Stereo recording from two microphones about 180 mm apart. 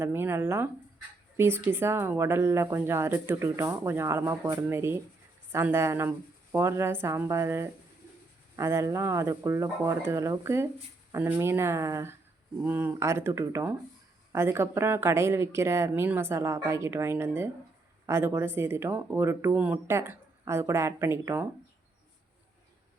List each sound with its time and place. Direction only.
0.0 s speech: 10° right (ahead or behind)